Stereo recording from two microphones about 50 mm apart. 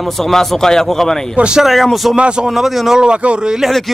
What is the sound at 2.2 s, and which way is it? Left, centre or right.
Speech, centre.